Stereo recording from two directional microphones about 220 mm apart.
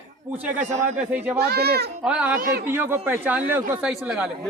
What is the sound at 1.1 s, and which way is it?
Speech, 10° right (ahead or behind).